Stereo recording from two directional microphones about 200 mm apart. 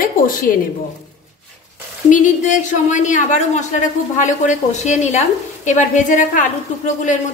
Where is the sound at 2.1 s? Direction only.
40° left (ahead or behind).